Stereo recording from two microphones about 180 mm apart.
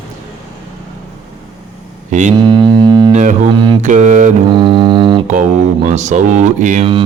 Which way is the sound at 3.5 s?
25° right (ahead or behind).